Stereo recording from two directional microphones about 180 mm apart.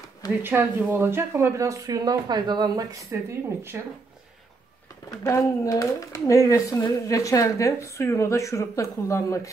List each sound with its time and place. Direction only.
0.4 s speech: 10° right (ahead or behind)
3.7 s speech: 10° right (ahead or behind)
5.2 s speech: 15° left (ahead or behind)